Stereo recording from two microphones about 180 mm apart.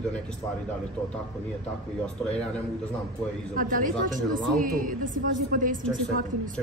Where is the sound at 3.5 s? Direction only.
50° right (ahead or behind).